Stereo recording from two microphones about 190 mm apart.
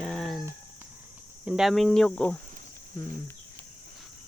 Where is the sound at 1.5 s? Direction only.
Centre (ahead or behind).